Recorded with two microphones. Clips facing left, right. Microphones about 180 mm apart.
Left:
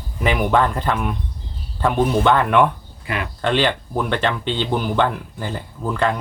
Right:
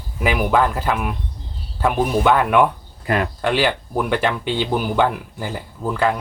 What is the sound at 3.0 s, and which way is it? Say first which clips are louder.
Speech: right 6 dB; 40° right (ahead or behind).